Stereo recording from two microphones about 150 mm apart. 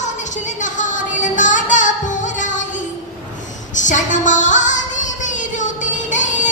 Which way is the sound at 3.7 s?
55° left (ahead or behind).